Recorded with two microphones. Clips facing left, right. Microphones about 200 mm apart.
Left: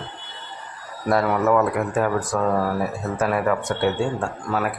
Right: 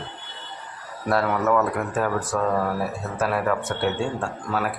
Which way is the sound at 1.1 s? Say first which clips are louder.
Left 2 dB; 10° left (ahead or behind).